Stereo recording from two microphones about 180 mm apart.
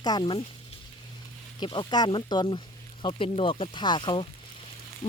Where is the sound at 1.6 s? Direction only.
25° left (ahead or behind).